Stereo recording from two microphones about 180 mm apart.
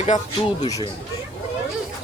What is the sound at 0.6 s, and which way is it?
Speech, 20° left (ahead or behind).